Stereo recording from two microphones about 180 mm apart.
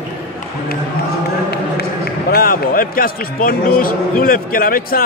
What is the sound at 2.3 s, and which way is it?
Speech, 55° left (ahead or behind).